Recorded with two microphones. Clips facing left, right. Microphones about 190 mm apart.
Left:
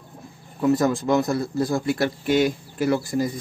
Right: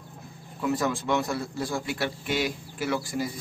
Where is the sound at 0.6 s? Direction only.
40° left (ahead or behind).